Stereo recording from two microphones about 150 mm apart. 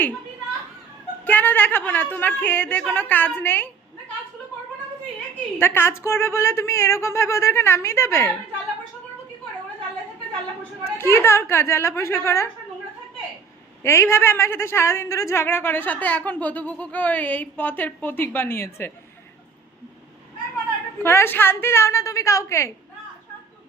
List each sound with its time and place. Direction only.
1.2 s a woman's voice: 10° left (ahead or behind)
5.5 s a woman's voice: 15° left (ahead or behind)
10.6 s a woman's voice: 15° left (ahead or behind)
13.8 s a woman's voice: 15° left (ahead or behind)
21.0 s a woman's voice: 15° left (ahead or behind)